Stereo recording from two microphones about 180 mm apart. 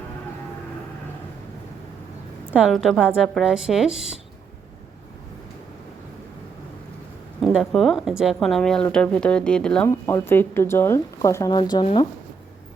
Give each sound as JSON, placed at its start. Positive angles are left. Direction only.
{"t": 2.5, "sound": "speech", "side_deg": -5}
{"t": 7.4, "sound": "speech", "side_deg": 0}
{"t": 9.9, "sound": "speech", "side_deg": 15}